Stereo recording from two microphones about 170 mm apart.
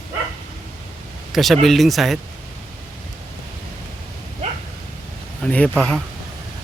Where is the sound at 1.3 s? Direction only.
Centre (ahead or behind).